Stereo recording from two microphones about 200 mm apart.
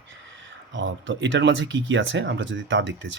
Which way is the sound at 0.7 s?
65° right (ahead or behind).